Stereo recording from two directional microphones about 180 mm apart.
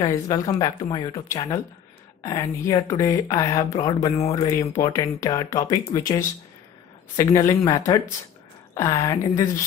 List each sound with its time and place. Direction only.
0.0 s speech: 20° left (ahead or behind)
2.6 s speech: 15° left (ahead or behind)